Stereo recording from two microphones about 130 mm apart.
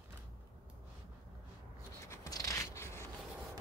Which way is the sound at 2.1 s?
25° left (ahead or behind).